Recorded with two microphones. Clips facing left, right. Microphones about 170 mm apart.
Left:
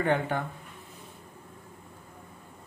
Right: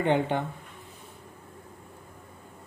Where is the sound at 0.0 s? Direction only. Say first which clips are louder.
Right 2 dB; 20° right (ahead or behind).